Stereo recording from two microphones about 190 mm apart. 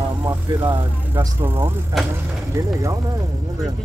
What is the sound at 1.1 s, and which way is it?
Speech, 10° right (ahead or behind).